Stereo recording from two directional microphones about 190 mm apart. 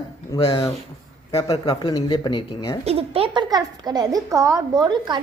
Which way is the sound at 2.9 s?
30° right (ahead or behind).